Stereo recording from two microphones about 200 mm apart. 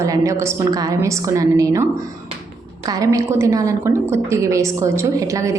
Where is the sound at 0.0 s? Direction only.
15° right (ahead or behind).